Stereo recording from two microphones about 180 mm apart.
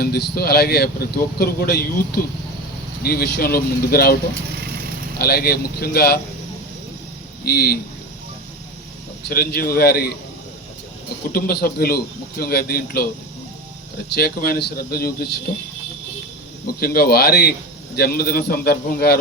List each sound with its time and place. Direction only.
0.0 s a man's voice: 60° left (ahead or behind)
7.4 s a man's voice: 60° left (ahead or behind)
9.2 s a man's voice: 60° left (ahead or behind)
11.3 s a man's voice: 55° left (ahead or behind)
14.1 s a man's voice: 60° left (ahead or behind)
16.6 s a man's voice: 55° left (ahead or behind)